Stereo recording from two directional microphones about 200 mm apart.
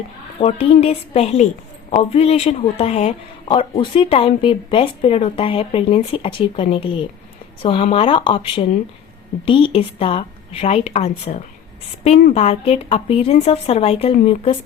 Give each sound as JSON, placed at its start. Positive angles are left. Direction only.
{"t": 0.3, "sound": "a woman's voice", "side_deg": 30}